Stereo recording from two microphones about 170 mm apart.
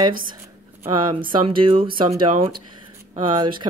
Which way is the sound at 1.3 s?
30° right (ahead or behind).